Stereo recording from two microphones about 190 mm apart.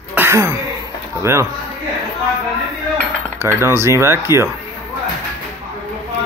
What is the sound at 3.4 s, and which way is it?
Speech, 15° right (ahead or behind).